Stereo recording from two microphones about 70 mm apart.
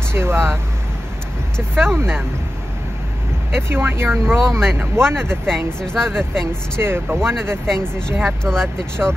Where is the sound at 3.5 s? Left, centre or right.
Right.